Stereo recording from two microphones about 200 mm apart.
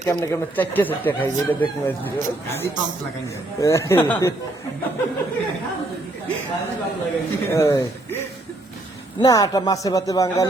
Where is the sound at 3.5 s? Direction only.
15° left (ahead or behind).